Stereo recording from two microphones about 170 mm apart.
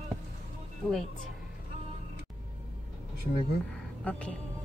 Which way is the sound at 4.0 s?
5° left (ahead or behind).